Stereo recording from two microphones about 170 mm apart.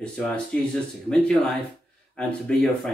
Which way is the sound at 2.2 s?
5° left (ahead or behind).